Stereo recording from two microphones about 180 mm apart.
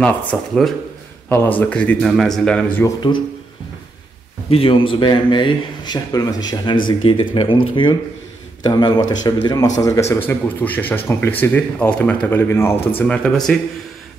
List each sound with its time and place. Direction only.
0.0 s speech: 5° left (ahead or behind)
2.8 s speech: 25° left (ahead or behind)
4.5 s speech: 30° left (ahead or behind); by 13.6 s 5° left (ahead or behind)